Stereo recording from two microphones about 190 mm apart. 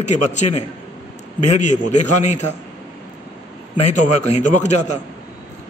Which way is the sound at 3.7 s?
40° left (ahead or behind).